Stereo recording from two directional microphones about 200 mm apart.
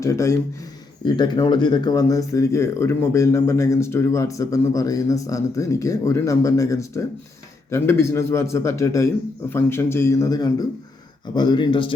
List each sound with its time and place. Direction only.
0.0 s speech: 15° left (ahead or behind)